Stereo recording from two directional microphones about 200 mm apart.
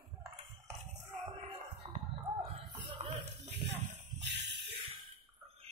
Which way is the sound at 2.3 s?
15° right (ahead or behind).